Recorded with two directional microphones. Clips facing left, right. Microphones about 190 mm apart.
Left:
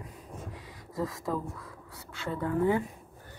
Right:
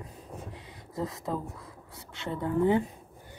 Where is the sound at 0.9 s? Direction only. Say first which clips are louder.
Left 1 dB; 25° right (ahead or behind).